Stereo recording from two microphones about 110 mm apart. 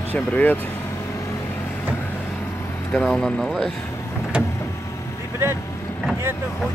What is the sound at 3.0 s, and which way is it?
Speech, 5° left (ahead or behind).